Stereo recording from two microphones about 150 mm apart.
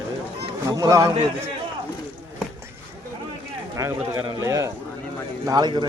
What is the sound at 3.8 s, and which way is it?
Speech, 20° right (ahead or behind).